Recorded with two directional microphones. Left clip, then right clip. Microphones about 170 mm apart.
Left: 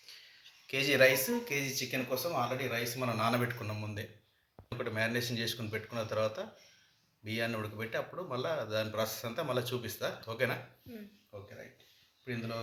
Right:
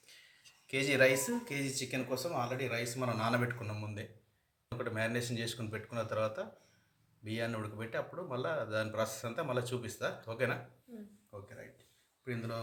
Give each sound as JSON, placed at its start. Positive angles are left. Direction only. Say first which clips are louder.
{"t": 0.7, "sound": "speech", "louder": "left 2 dB", "side_deg": 0}
{"t": 11.3, "sound": "speech", "louder": "left 1 dB", "side_deg": -20}